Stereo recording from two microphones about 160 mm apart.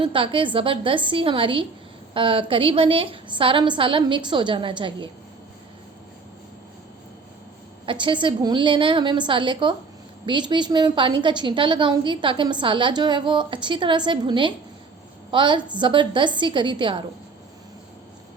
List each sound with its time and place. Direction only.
0.0 s a woman's voice: 30° right (ahead or behind)
7.9 s a woman's voice: 30° right (ahead or behind)